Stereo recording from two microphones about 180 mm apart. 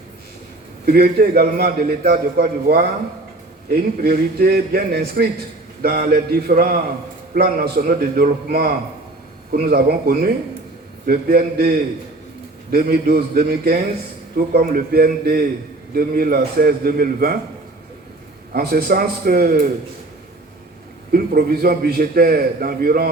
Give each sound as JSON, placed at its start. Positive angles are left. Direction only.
{"t": 0.9, "sound": "a man's voice", "side_deg": -55}
{"t": 18.5, "sound": "a man's voice", "side_deg": -55}
{"t": 21.1, "sound": "a man's voice", "side_deg": -55}